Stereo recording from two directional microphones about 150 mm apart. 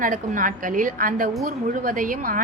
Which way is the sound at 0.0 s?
65° right (ahead or behind).